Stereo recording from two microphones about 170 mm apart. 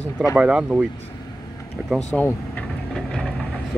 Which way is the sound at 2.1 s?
5° left (ahead or behind).